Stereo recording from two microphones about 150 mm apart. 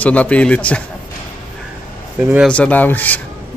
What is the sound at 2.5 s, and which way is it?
Speech, 10° left (ahead or behind).